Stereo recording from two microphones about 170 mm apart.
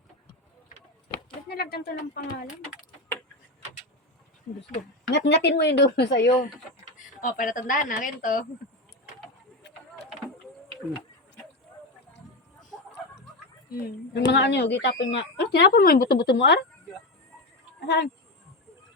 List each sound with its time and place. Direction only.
1.5 s speech: 65° left (ahead or behind)
5.1 s speech: 90° left
7.2 s speech: 50° left (ahead or behind)
13.7 s speech: 65° left (ahead or behind)
14.3 s speech: 85° left
17.7 s a sound: 80° left